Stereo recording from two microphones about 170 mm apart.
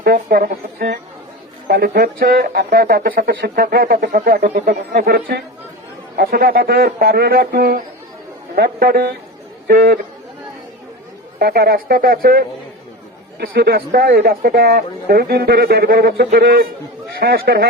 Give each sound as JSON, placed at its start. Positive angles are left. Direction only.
{"t": 0.0, "sound": "a man's voice", "side_deg": -65}
{"t": 11.3, "sound": "a man's voice", "side_deg": -65}